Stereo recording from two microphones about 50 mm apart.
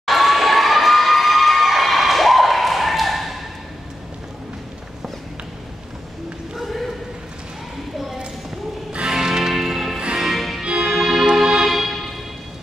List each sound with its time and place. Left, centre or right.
0.0 s crowd: centre
6.5 s a sound: centre
9.1 s music: centre